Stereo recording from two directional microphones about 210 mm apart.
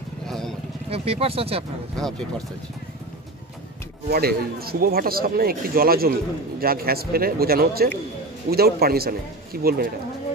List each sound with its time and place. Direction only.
0.3 s vehicle: centre (ahead or behind)
0.8 s speech: 30° right (ahead or behind)
2.0 s speech: 5° left (ahead or behind)
4.1 s speech: 45° right (ahead or behind)